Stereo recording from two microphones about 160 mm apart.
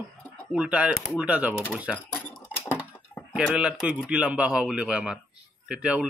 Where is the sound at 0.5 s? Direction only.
10° right (ahead or behind).